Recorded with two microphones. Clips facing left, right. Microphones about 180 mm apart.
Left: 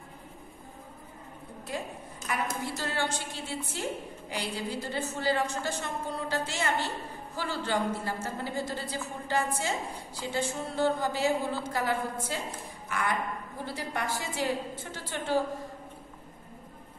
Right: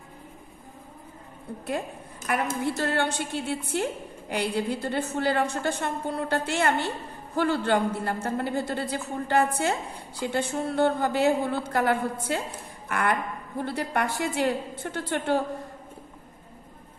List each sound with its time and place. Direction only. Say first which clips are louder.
2.3 s a woman's voice: right 6 dB; 60° right (ahead or behind)